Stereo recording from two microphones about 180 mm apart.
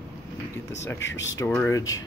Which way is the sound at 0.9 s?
90° left.